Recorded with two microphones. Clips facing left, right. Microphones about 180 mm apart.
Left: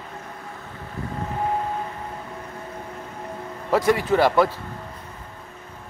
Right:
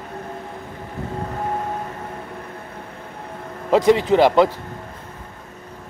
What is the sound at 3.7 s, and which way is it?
Speech, 20° right (ahead or behind).